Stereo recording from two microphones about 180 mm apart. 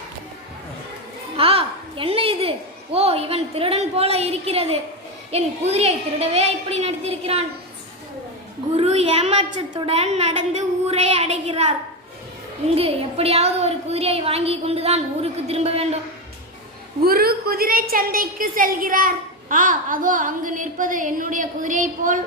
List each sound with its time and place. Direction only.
1.4 s a sound: 30° right (ahead or behind)
2.9 s speech: 35° right (ahead or behind)
8.7 s speech: 35° right (ahead or behind)
12.7 s speech: 35° right (ahead or behind)
17.0 s a woman's voice: 55° right (ahead or behind)